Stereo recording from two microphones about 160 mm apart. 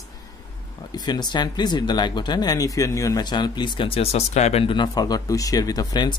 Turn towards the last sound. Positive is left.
turn(degrees=25)  # may be behind; listen again after turning